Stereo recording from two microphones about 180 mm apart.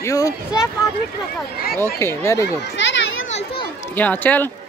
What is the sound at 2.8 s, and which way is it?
Children playing, 90° left.